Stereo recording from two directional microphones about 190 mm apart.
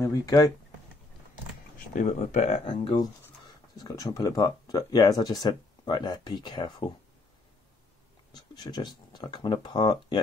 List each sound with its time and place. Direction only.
0.0 s speech: 15° left (ahead or behind)
1.8 s speech: 40° left (ahead or behind)
3.7 s speech: 20° left (ahead or behind)
8.3 s speech: 20° left (ahead or behind)